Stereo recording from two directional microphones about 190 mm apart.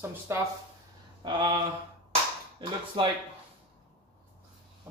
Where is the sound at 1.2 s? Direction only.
25° right (ahead or behind).